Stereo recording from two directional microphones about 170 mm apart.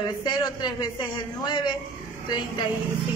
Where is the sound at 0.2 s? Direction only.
25° left (ahead or behind).